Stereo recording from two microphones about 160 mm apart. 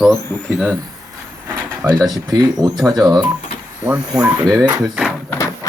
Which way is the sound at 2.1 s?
25° right (ahead or behind).